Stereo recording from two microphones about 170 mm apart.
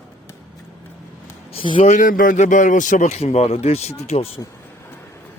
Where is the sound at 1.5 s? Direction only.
30° left (ahead or behind).